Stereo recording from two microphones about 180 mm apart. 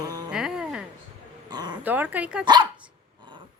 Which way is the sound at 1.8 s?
10° right (ahead or behind).